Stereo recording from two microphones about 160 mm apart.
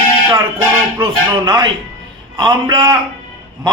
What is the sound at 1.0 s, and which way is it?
A man's voice, 25° right (ahead or behind).